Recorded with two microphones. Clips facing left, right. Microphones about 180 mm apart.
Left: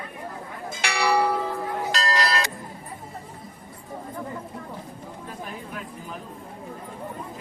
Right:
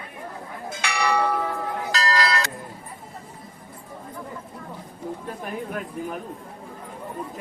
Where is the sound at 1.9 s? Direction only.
25° left (ahead or behind).